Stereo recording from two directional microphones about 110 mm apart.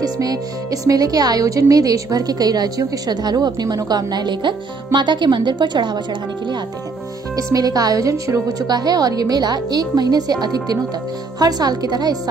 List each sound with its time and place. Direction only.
0.0 s speech: 35° right (ahead or behind)
7.5 s speech: 35° right (ahead or behind)